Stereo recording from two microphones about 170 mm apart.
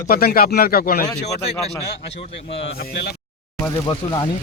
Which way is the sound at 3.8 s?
25° left (ahead or behind).